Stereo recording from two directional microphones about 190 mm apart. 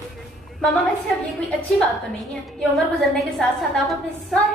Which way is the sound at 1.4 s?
Centre (ahead or behind).